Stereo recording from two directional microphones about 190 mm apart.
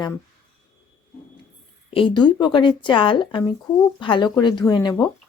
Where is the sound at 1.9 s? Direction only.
25° left (ahead or behind).